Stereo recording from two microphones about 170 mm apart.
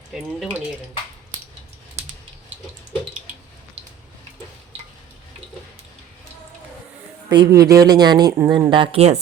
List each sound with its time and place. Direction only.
0.1 s speech: 5° right (ahead or behind)
7.3 s a man's voice: 20° right (ahead or behind)